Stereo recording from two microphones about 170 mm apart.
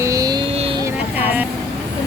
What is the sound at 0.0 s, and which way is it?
Vehicle, 20° right (ahead or behind).